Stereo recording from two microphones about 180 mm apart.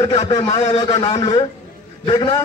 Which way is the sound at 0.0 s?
35° left (ahead or behind).